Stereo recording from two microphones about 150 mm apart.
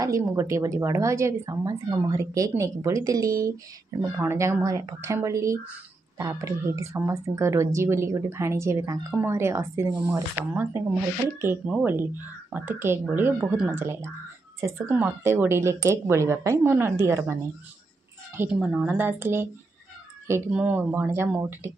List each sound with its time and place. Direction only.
0.0 s a woman's voice: 20° right (ahead or behind)
20.5 s speech: 10° right (ahead or behind)